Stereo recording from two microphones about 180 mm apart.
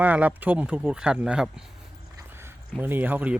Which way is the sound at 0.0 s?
10° right (ahead or behind).